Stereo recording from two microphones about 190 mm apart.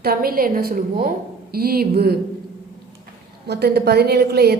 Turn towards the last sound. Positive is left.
turn(degrees=-55)  # may be behind; listen again after turning